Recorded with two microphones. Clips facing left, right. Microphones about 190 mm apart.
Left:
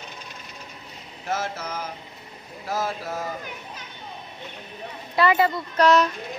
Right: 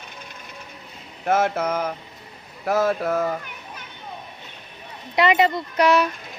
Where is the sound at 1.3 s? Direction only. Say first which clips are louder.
Right 8 dB; 55° right (ahead or behind).